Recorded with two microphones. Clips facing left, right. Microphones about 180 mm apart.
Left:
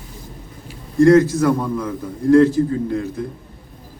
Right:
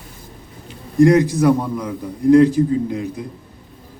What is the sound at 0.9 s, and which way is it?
Speech, 15° right (ahead or behind).